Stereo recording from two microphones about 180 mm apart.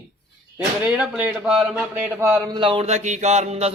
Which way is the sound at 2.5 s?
25° right (ahead or behind).